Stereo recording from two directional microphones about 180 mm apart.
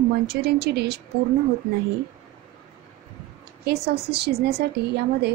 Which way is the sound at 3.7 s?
65° right (ahead or behind).